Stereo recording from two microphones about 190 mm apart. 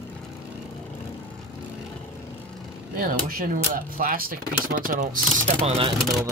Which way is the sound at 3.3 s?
50° right (ahead or behind).